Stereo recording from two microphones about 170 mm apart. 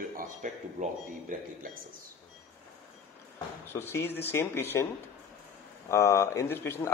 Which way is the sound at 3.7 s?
15° left (ahead or behind).